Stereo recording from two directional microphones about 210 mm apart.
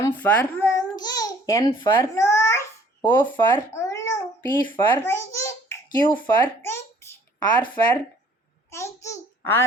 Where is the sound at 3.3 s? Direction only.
15° left (ahead or behind).